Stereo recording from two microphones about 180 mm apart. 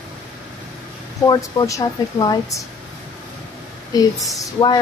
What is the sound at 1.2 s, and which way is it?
A woman's voice, 20° left (ahead or behind).